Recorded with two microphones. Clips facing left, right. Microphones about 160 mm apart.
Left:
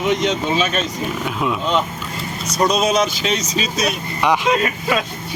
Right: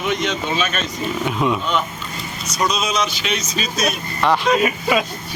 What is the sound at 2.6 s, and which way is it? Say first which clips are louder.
Speech: left 5 dB; 50° left (ahead or behind).